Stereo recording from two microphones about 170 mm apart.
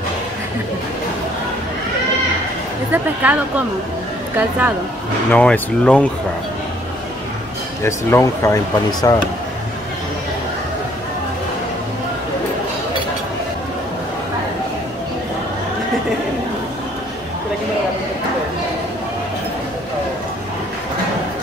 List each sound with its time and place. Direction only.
2.9 s speech: 10° right (ahead or behind)
5.3 s speech: 5° left (ahead or behind)
7.8 s speech: 15° left (ahead or behind)